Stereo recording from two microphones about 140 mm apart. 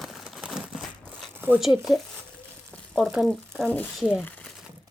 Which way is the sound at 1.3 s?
15° right (ahead or behind).